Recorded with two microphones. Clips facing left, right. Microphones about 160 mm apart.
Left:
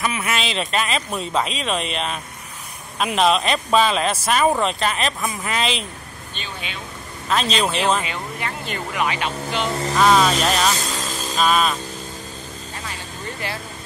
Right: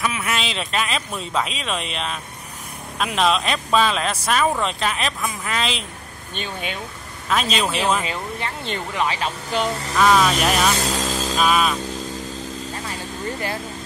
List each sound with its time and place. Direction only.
0.0 s speech: centre (ahead or behind)
6.3 s speech: 50° right (ahead or behind)
7.2 s speech: 5° right (ahead or behind)
8.0 s speech: 30° right (ahead or behind)
9.9 s speech: centre (ahead or behind)
10.7 s speech: 65° right (ahead or behind)
11.3 s speech: 5° right (ahead or behind)